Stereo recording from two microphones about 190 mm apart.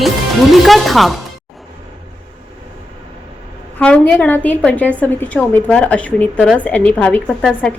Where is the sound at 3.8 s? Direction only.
5° left (ahead or behind).